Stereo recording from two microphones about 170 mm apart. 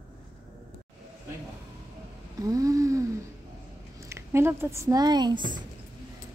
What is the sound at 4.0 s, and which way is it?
Speech, 15° right (ahead or behind).